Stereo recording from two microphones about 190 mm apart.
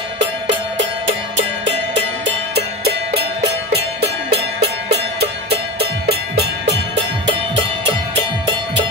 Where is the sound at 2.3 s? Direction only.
55° right (ahead or behind).